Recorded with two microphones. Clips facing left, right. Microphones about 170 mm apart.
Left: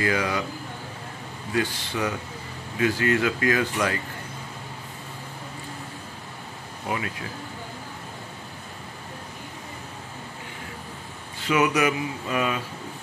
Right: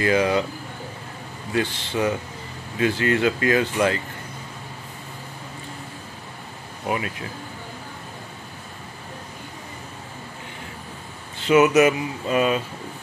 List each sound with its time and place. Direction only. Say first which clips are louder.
0.0 s speech: right 5 dB; 25° right (ahead or behind)
1.5 s speech: right 2 dB; 25° right (ahead or behind)
11.4 s speech: right 6 dB; 25° right (ahead or behind)